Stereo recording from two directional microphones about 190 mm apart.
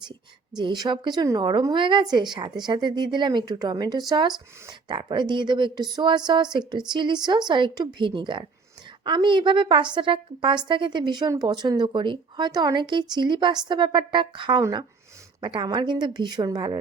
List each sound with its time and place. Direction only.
0.1 s speech: 25° right (ahead or behind)